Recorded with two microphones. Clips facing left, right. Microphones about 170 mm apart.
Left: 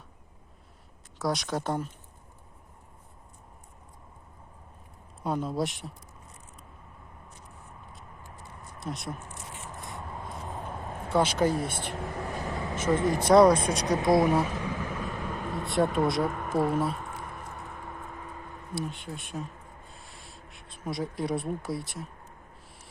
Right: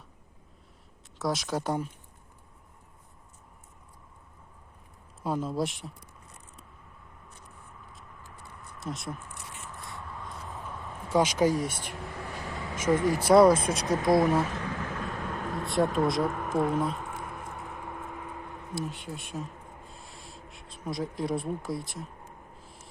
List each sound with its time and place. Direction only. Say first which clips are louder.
1.2 s speech: even; centre (ahead or behind)
5.2 s speech: even; centre (ahead or behind)
8.8 s speech: even; centre (ahead or behind)
9.1 s a sound: left 2 dB; 40° left (ahead or behind)
10.5 s a sound: left 3 dB; 45° left (ahead or behind)
11.1 s speech: right 1 dB; 10° right (ahead or behind)
11.6 s a sound: left 2 dB; 50° left (ahead or behind)
12.9 s speech: right 1 dB; 20° left (ahead or behind)
13.2 s speech: even; 5° right (ahead or behind)
14.0 s speech: even; 25° left (ahead or behind)
14.4 s vehicle: left 1 dB; 10° left (ahead or behind)
17.1 s vehicle: right 1 dB; 10° right (ahead or behind)
18.7 s speech: left 1 dB; centre (ahead or behind)
19.9 s a sound: right 2 dB; centre (ahead or behind)